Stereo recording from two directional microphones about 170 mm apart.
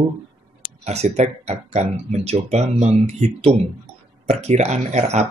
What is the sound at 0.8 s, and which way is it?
Speech, 40° right (ahead or behind).